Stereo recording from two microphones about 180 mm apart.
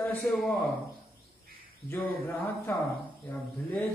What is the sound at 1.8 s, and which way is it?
Speech, 15° left (ahead or behind).